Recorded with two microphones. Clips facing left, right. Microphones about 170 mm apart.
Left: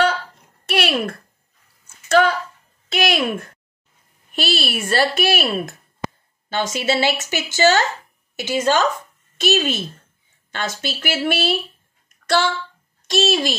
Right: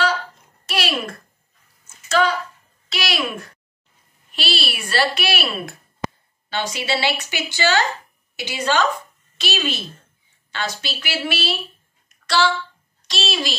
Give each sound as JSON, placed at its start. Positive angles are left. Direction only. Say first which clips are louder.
{"t": 0.7, "sound": "a sound", "louder": "left 4 dB", "side_deg": 55}
{"t": 2.0, "sound": "a woman's voice", "louder": "left 3 dB", "side_deg": 55}
{"t": 4.3, "sound": "speech", "louder": "left 4 dB", "side_deg": 50}
{"t": 12.3, "sound": "a child's voice", "louder": "left 1 dB", "side_deg": 50}